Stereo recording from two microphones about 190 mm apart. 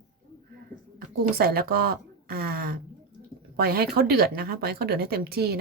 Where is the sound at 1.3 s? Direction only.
55° right (ahead or behind).